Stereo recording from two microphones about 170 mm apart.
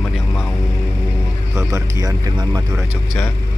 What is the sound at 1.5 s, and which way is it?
Speech, 20° right (ahead or behind).